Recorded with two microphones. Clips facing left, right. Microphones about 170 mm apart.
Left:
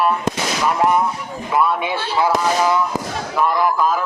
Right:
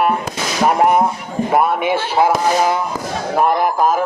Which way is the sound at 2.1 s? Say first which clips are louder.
Right 2 dB; 50° right (ahead or behind).